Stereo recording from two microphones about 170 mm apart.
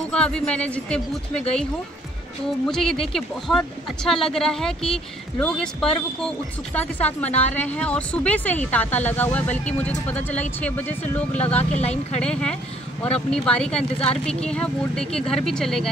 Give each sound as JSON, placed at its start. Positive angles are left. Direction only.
{"t": 0.1, "sound": "speech", "side_deg": 5}
{"t": 2.6, "sound": "speech", "side_deg": 5}
{"t": 11.4, "sound": "speech", "side_deg": 40}
{"t": 12.2, "sound": "speech", "side_deg": 5}